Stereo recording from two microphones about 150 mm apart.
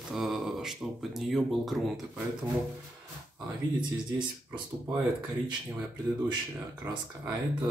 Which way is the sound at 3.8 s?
30° right (ahead or behind).